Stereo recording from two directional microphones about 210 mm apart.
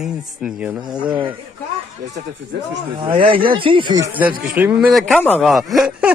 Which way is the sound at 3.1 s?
25° right (ahead or behind).